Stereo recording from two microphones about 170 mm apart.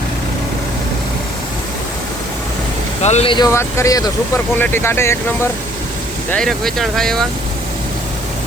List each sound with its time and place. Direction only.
3.0 s speech: 40° left (ahead or behind)
3.3 s speech: 20° left (ahead or behind)
6.3 s speech: 5° left (ahead or behind)